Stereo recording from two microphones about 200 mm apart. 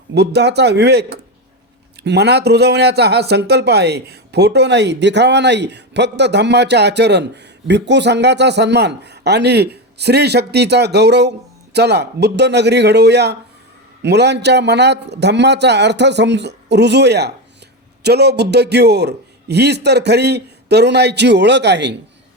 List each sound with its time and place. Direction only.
0.1 s a man's voice: 55° right (ahead or behind)